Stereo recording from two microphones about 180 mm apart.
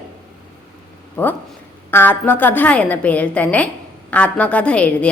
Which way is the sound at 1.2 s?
10° left (ahead or behind).